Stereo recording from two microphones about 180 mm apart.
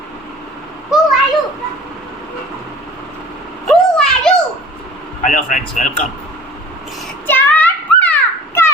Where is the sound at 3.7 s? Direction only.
5° left (ahead or behind).